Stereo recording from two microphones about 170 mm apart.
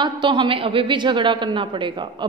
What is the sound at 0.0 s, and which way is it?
A woman's voice, 25° right (ahead or behind).